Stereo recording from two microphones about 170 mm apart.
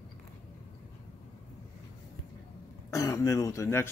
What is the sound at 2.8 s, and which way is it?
Throat clearing, 20° left (ahead or behind).